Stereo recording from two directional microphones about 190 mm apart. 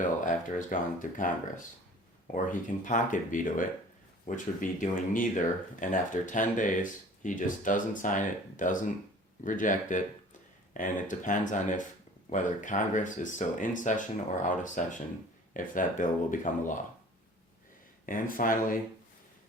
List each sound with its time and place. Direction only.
0.2 s speech: 45° left (ahead or behind)
18.0 s speech: 45° left (ahead or behind)